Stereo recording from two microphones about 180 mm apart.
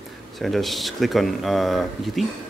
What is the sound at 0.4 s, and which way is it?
Speech, centre (ahead or behind).